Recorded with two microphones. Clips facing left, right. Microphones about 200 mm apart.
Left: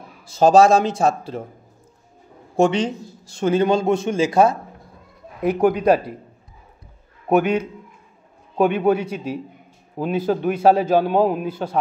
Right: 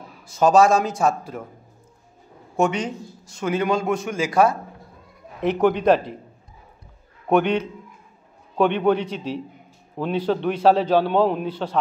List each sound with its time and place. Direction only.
0.3 s a man's voice: 30° left (ahead or behind)
2.5 s a man's voice: 30° left (ahead or behind)
5.4 s a man's voice: 10° left (ahead or behind)
7.2 s a man's voice: 5° left (ahead or behind)